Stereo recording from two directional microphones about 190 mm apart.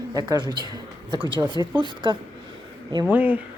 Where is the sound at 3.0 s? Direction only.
10° right (ahead or behind).